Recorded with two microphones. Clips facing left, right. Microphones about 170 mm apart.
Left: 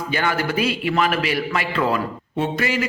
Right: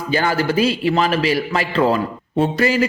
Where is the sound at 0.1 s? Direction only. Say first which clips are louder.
Right 5 dB; 35° right (ahead or behind).